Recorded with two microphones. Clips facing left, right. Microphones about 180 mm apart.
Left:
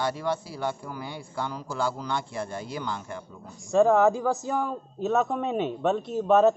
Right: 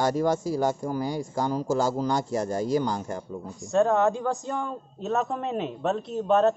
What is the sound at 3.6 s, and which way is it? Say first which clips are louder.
Speech: left 2 dB; centre (ahead or behind).